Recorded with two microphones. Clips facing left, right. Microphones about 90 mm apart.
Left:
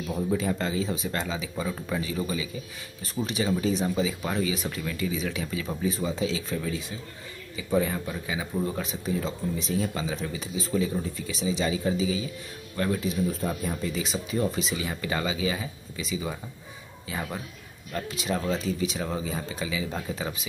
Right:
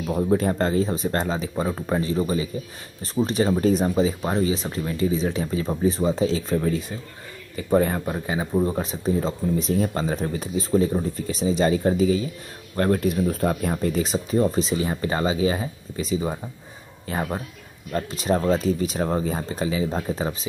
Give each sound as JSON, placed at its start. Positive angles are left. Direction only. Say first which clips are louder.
{"t": 0.0, "sound": "speech", "louder": "right 6 dB", "side_deg": -50}
{"t": 8.5, "sound": "speech", "louder": "right 7 dB", "side_deg": -35}